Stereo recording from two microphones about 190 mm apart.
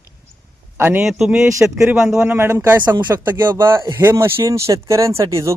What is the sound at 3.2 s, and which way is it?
Speech, 10° right (ahead or behind).